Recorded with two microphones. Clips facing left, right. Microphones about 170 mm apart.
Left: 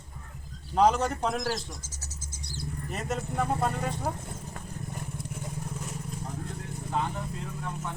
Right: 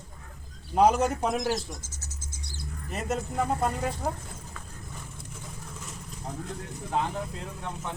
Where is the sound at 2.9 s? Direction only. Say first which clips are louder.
Right 3 dB; centre (ahead or behind).